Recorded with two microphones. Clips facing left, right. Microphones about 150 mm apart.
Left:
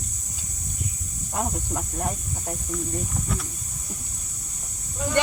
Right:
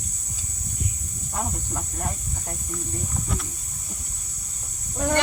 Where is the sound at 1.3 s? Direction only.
15° left (ahead or behind).